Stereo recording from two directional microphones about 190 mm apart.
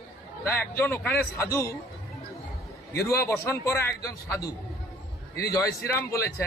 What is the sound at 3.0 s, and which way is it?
A man's voice, 15° left (ahead or behind).